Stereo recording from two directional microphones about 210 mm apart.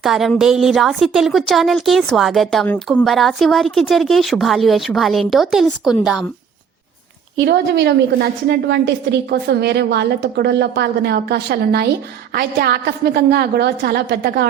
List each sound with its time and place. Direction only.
0.0 s a woman's voice: centre (ahead or behind)
7.4 s a woman's voice: 50° right (ahead or behind)